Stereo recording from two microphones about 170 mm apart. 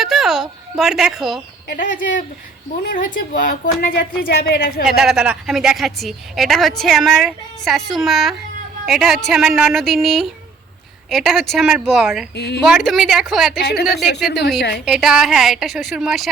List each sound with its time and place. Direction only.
0.0 s a woman's voice: centre (ahead or behind)
1.6 s a woman's voice: 55° left (ahead or behind)
4.9 s a woman's voice: centre (ahead or behind)
13.7 s speech: 75° left (ahead or behind)
14.8 s a woman's voice: 5° right (ahead or behind)